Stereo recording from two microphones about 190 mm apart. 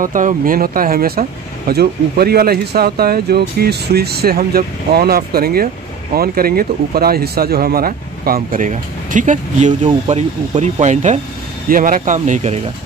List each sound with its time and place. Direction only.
0.0 s a man's voice: 45° right (ahead or behind)